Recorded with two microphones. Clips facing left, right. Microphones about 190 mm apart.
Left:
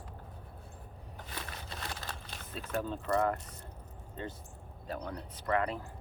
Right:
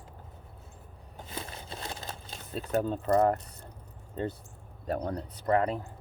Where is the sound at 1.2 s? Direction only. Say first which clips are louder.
Right 4 dB; 25° right (ahead or behind).